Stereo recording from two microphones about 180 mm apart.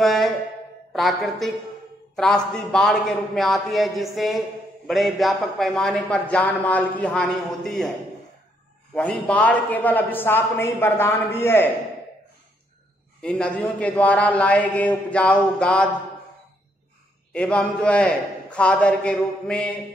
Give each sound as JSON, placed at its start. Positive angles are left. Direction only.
{"t": 0.0, "sound": "a sound", "side_deg": 0}
{"t": 0.9, "sound": "a man's voice", "side_deg": 0}
{"t": 8.9, "sound": "a man's voice", "side_deg": 5}
{"t": 13.2, "sound": "a man's voice", "side_deg": 5}
{"t": 17.3, "sound": "a man's voice", "side_deg": 5}